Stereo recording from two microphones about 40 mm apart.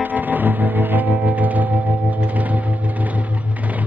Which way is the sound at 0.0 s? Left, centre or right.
Right.